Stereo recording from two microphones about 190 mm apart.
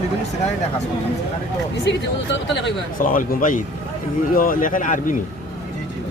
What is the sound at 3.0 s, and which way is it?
Speech, 45° left (ahead or behind).